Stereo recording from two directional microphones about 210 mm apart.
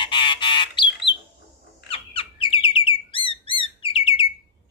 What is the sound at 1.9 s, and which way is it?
Chirp, 25° left (ahead or behind).